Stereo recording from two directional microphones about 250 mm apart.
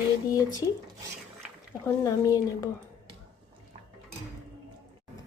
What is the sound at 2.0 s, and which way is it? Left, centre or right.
Speech, centre.